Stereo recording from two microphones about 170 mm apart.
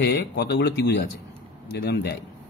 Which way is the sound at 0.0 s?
75° left (ahead or behind).